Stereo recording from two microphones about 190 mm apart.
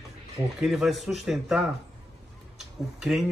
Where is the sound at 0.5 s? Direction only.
Centre (ahead or behind).